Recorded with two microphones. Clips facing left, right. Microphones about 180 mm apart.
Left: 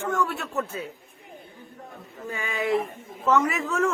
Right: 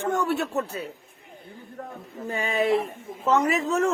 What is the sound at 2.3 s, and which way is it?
A man's voice, 30° right (ahead or behind).